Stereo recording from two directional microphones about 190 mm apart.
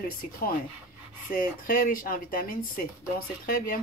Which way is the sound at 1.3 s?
45° left (ahead or behind).